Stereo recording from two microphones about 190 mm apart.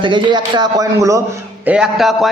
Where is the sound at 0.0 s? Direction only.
25° right (ahead or behind).